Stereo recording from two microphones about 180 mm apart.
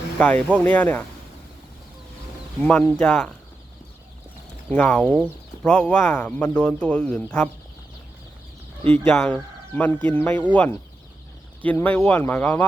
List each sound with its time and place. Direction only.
0.2 s speech: 5° left (ahead or behind)
2.6 s speech: 10° left (ahead or behind)
4.7 s speech: 5° left (ahead or behind)
8.8 s speech: 10° left (ahead or behind)